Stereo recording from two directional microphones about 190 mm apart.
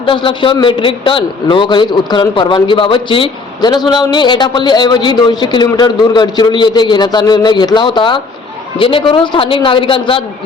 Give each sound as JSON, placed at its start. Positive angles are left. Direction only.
{"t": 0.0, "sound": "a man's voice", "side_deg": 25}